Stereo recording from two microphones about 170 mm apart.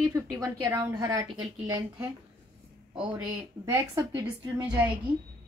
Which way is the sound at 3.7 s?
20° right (ahead or behind).